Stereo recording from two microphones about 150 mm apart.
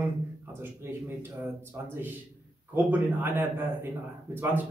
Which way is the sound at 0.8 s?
15° right (ahead or behind).